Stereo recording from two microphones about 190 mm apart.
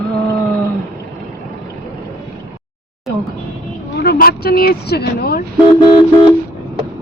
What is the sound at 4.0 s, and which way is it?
Speech, 55° left (ahead or behind).